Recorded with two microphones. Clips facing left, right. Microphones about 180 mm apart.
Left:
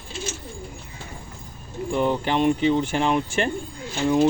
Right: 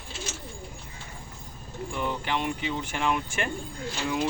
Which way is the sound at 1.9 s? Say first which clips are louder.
Left 8 dB; 30° left (ahead or behind).